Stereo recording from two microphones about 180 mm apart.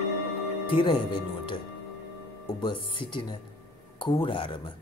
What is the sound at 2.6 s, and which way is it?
Speech, 25° left (ahead or behind).